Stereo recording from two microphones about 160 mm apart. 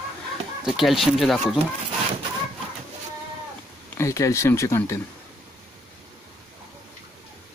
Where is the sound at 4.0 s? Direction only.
20° left (ahead or behind).